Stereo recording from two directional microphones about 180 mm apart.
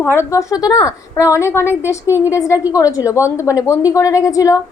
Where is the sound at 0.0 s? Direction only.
15° left (ahead or behind).